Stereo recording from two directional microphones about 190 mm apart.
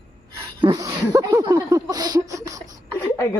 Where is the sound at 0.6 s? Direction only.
20° right (ahead or behind).